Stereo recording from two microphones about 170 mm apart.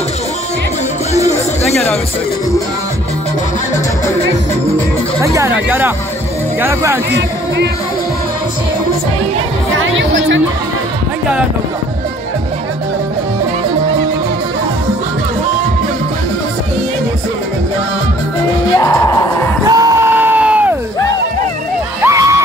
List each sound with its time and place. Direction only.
5.2 s speech: 20° right (ahead or behind)
7.1 s speech: 90° right
9.9 s speech: 90° right
18.8 s music: 20° left (ahead or behind)
19.7 s crowd: 20° right (ahead or behind)
22.0 s a sound: 20° right (ahead or behind)